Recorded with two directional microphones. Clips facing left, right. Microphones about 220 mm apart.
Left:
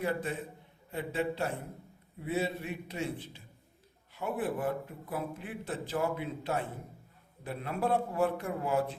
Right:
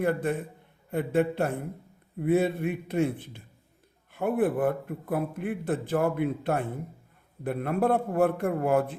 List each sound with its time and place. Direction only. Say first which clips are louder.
0.0 s a man's voice: right 7 dB; 55° right (ahead or behind)